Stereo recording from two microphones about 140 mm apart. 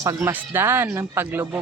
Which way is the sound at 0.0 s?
20° right (ahead or behind).